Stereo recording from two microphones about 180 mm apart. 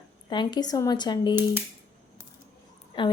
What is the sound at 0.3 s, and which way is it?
Speech, 25° left (ahead or behind).